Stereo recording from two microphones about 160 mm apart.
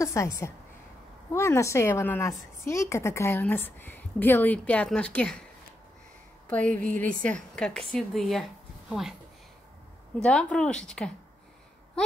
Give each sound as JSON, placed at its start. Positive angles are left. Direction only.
{"t": 0.0, "sound": "a woman's voice", "side_deg": 20}
{"t": 6.9, "sound": "a woman's voice", "side_deg": 10}
{"t": 10.2, "sound": "speech", "side_deg": 5}